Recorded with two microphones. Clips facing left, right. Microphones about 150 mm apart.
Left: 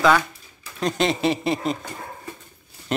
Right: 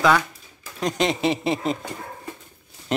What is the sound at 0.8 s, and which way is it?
Speech, 15° right (ahead or behind).